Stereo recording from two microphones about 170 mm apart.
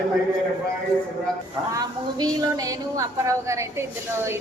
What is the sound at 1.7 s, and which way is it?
A woman's voice, 20° right (ahead or behind).